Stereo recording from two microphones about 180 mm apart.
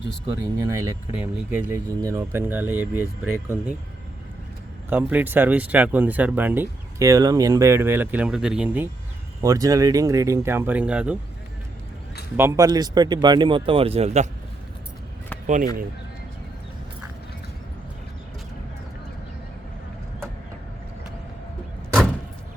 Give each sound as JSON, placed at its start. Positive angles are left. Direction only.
{"t": 0.6, "sound": "speech", "side_deg": -20}
{"t": 4.9, "sound": "speech", "side_deg": -10}
{"t": 9.4, "sound": "speech", "side_deg": -20}
{"t": 12.4, "sound": "speech", "side_deg": -15}
{"t": 15.4, "sound": "speech", "side_deg": -45}